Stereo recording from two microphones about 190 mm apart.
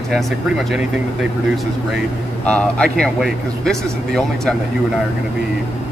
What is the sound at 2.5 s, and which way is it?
Speech, 5° left (ahead or behind).